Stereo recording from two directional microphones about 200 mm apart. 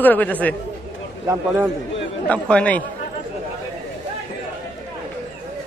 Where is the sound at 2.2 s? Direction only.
5° left (ahead or behind).